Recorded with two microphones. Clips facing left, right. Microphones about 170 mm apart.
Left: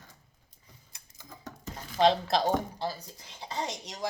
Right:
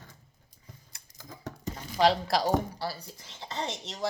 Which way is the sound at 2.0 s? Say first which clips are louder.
Even; 25° left (ahead or behind).